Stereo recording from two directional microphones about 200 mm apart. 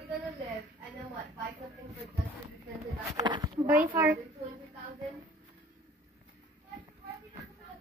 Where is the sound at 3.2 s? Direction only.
20° right (ahead or behind).